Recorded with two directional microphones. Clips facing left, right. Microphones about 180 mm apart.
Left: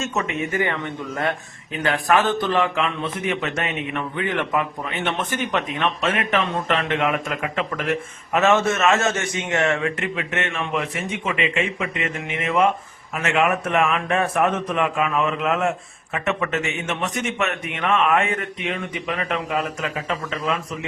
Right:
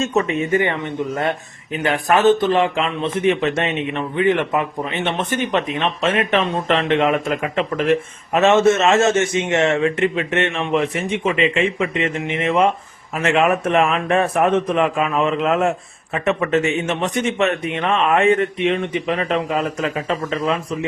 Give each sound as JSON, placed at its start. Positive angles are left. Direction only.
{"t": 0.0, "sound": "a man's voice", "side_deg": -30}